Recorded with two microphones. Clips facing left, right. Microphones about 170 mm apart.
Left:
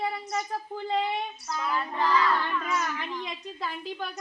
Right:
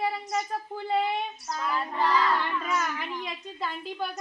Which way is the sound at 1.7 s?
30° right (ahead or behind).